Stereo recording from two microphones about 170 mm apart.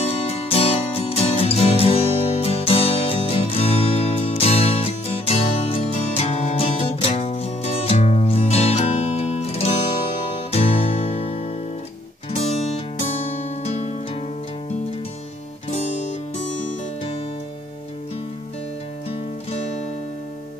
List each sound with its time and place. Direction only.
0.0 s music: 35° left (ahead or behind)